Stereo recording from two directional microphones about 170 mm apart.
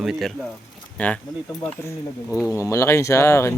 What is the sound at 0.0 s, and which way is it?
Speech, centre (ahead or behind).